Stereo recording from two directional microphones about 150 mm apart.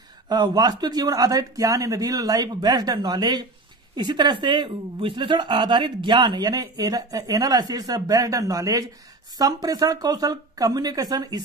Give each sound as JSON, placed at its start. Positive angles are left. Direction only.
{"t": 0.3, "sound": "a woman's voice", "side_deg": -25}